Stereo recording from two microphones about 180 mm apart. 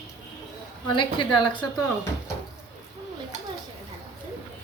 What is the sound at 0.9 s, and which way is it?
Speech, 25° left (ahead or behind).